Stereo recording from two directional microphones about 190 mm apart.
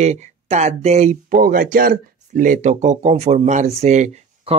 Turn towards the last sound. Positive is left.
turn(degrees=-35)  # may be behind; listen again after turning